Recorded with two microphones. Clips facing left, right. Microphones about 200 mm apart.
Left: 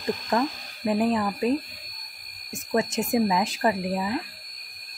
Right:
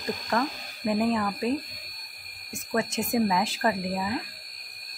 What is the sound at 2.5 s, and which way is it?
Speech, 20° left (ahead or behind).